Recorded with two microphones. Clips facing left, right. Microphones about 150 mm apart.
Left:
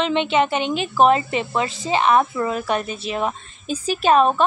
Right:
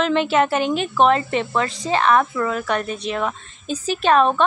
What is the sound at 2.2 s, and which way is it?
Speech, 25° left (ahead or behind).